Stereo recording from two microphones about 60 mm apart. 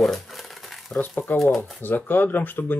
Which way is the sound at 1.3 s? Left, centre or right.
Left.